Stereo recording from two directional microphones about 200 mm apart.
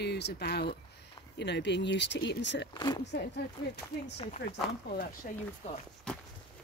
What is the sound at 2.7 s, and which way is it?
Speech, 20° left (ahead or behind).